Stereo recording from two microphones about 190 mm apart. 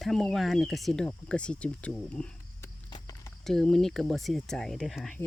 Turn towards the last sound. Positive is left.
turn(degrees=0)  # may be behind; listen again after turning